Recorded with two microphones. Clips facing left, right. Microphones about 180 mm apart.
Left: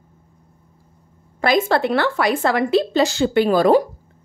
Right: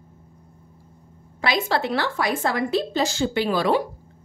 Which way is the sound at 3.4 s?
45° left (ahead or behind).